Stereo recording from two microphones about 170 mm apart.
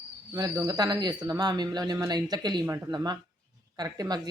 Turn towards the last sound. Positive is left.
turn(degrees=-25)  # may be behind; listen again after turning